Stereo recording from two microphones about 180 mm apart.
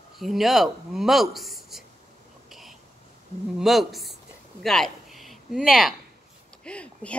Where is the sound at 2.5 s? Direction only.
Centre (ahead or behind).